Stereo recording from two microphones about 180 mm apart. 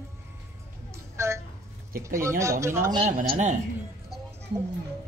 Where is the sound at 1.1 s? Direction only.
15° right (ahead or behind).